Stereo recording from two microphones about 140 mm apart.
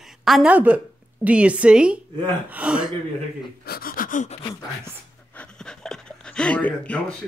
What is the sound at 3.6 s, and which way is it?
Speech, 90° left.